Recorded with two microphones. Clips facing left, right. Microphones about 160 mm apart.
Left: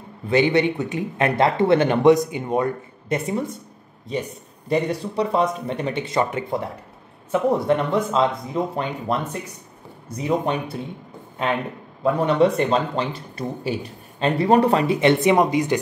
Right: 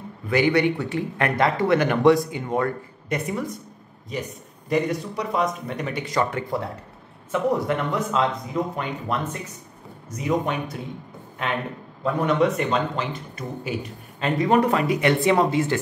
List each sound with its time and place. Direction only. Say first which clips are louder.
0.3 s speech: left 2 dB; 25° left (ahead or behind)
12.4 s speech: left 3 dB; 30° left (ahead or behind)